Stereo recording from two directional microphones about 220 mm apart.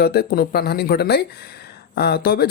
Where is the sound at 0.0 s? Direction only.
45° left (ahead or behind).